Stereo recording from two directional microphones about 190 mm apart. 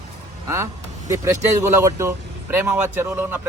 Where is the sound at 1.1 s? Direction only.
15° right (ahead or behind).